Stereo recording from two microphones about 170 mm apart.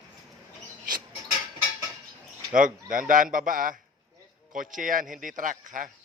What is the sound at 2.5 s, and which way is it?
Speech, 50° right (ahead or behind).